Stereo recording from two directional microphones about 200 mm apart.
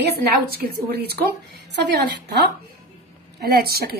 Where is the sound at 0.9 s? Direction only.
55° right (ahead or behind).